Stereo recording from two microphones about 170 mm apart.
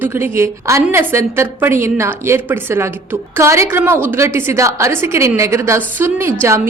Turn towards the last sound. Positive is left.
turn(degrees=-15)  # may be behind; listen again after turning